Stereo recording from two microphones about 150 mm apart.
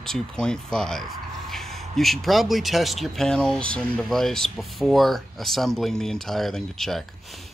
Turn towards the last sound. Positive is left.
turn(degrees=0)  # may be behind; listen again after turning